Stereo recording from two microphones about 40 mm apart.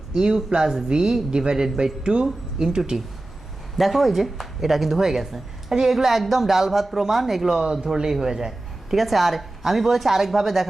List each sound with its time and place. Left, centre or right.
0.1 s speech: centre
3.8 s speech: centre